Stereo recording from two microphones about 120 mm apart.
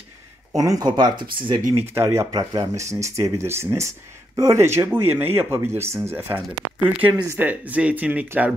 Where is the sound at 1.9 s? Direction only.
20° right (ahead or behind).